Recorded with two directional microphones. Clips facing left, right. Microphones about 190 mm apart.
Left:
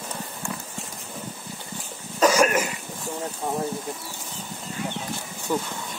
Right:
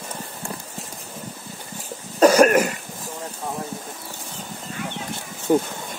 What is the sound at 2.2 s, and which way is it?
Cough, 55° right (ahead or behind).